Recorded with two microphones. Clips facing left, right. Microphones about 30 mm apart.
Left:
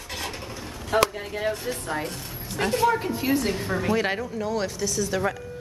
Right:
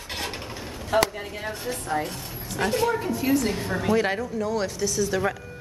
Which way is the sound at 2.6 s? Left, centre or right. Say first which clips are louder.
Left 1 dB; centre.